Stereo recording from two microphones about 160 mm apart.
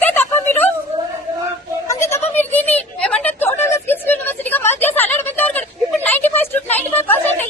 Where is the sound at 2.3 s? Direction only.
10° left (ahead or behind).